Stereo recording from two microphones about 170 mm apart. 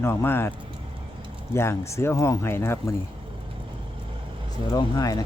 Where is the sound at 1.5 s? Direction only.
15° left (ahead or behind).